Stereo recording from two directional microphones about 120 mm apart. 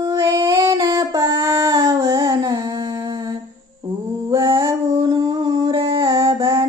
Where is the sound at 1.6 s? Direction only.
25° right (ahead or behind).